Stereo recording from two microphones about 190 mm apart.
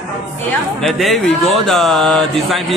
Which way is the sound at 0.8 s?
Centre (ahead or behind).